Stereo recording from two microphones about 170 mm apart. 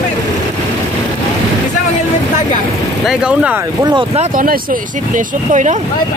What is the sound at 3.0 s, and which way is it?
Speech, 5° right (ahead or behind).